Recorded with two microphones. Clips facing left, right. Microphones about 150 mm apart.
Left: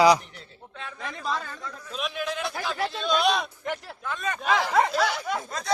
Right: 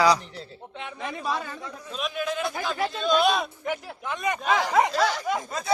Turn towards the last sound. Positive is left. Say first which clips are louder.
# right 2 dB
turn(degrees=-10)  # may be behind; listen again after turning